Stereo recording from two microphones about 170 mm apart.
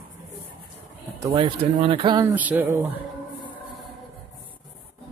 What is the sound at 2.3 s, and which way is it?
Speech, 10° right (ahead or behind).